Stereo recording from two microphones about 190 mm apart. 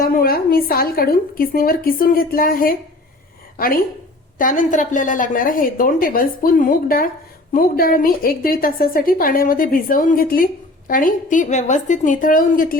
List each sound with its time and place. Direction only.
0.0 s a woman's voice: 50° left (ahead or behind)
4.4 s a woman's voice: 45° left (ahead or behind)